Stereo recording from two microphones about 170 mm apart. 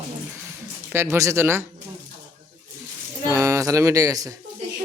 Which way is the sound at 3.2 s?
15° right (ahead or behind).